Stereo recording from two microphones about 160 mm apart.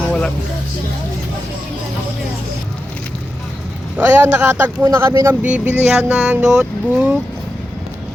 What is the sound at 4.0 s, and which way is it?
Speech, 15° right (ahead or behind).